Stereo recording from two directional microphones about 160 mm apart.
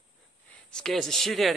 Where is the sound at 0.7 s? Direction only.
Centre (ahead or behind).